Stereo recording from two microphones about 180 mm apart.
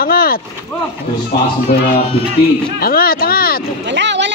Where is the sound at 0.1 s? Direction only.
55° left (ahead or behind).